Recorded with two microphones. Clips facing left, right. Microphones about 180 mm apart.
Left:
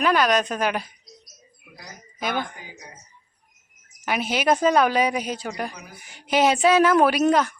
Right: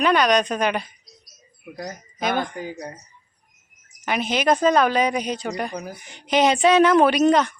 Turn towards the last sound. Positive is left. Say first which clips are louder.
# right 2 dB
turn(degrees=5)  # may be behind; listen again after turning